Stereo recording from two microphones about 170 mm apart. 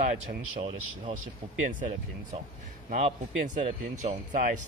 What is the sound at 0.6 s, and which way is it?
Speech, 35° right (ahead or behind).